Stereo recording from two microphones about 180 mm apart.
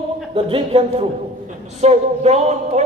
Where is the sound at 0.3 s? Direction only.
30° right (ahead or behind).